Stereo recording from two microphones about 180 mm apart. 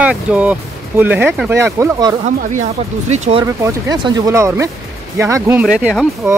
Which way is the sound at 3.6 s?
20° right (ahead or behind).